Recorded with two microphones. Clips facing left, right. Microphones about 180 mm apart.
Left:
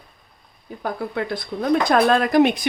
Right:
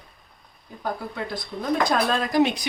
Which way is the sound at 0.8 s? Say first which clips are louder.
Left 4 dB; 60° left (ahead or behind).